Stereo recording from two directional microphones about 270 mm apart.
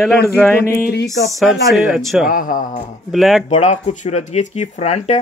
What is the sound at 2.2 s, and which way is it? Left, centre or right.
Speech, left.